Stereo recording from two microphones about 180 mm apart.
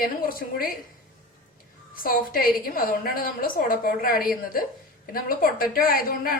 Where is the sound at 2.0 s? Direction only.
55° left (ahead or behind).